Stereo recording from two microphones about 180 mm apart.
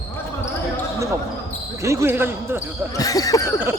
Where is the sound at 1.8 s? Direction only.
15° right (ahead or behind).